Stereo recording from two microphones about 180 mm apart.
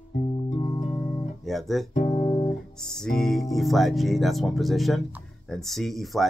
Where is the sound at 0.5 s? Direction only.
30° left (ahead or behind).